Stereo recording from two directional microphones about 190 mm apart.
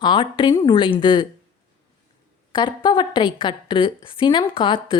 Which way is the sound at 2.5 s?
25° left (ahead or behind).